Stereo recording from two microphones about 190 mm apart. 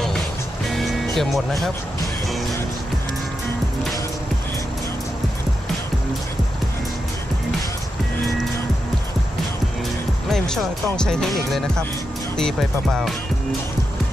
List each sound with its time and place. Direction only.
0.7 s music: centre (ahead or behind)
10.3 s speech: 5° left (ahead or behind)